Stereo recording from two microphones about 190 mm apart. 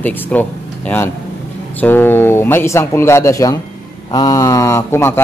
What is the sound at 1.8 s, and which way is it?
Speech, 10° left (ahead or behind).